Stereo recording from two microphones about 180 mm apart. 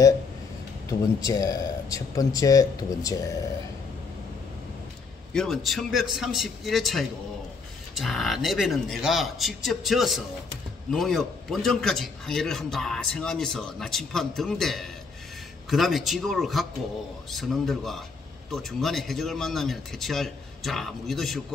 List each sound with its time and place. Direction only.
1.3 s speech: 20° left (ahead or behind)
5.3 s a man's voice: centre (ahead or behind)